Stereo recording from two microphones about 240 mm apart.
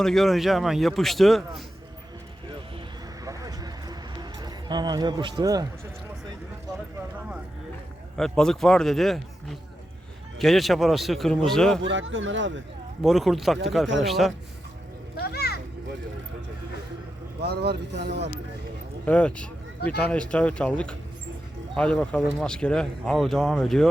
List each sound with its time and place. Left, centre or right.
0.0 s speech: centre
3.2 s a sound: centre
8.1 s speech: centre
11.8 s speech: right
13.0 s speech: centre
15.2 s children playing: left
17.4 s speech: right
19.0 s speech: centre